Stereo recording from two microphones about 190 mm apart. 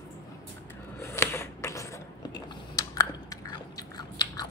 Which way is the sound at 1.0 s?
15° left (ahead or behind).